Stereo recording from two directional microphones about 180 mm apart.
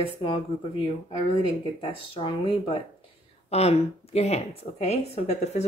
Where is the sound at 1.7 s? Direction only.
30° left (ahead or behind).